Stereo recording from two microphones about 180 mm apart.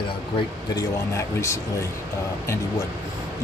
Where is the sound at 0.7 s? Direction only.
15° left (ahead or behind).